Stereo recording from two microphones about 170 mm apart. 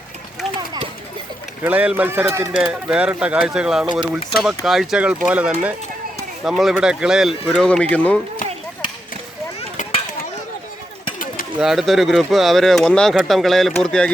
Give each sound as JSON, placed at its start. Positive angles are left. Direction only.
{"t": 1.6, "sound": "speech", "side_deg": -10}
{"t": 9.6, "sound": "a sound", "side_deg": 35}
{"t": 11.6, "sound": "speech", "side_deg": 0}